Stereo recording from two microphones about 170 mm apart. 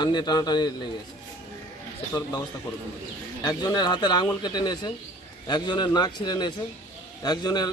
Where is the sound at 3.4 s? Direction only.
25° left (ahead or behind).